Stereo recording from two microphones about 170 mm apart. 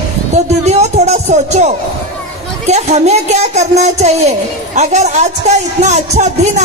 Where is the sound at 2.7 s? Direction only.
40° right (ahead or behind).